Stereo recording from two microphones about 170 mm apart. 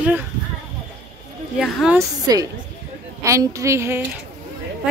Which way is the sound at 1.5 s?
Centre (ahead or behind).